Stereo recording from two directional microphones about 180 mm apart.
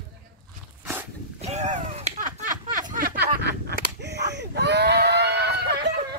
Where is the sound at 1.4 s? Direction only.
40° right (ahead or behind); by 6.0 s 65° right (ahead or behind).